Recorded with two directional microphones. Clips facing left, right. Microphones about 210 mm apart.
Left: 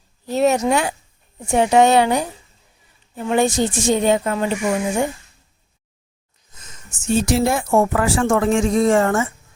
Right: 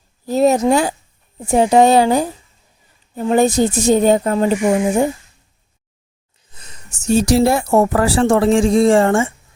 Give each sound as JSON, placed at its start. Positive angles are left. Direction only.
{"t": 0.3, "sound": "a woman's voice", "side_deg": -35}
{"t": 6.6, "sound": "a sound", "side_deg": -35}
{"t": 7.7, "sound": "a woman's voice", "side_deg": -40}